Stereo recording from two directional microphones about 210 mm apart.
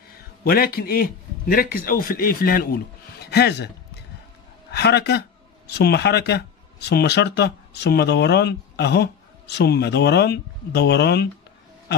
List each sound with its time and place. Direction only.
0.4 s speech: 45° left (ahead or behind)